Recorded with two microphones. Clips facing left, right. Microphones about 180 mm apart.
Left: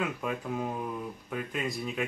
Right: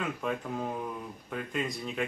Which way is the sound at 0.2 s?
5° left (ahead or behind).